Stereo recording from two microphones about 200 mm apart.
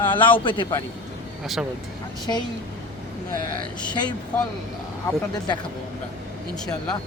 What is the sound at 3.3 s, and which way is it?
Speech, 45° right (ahead or behind).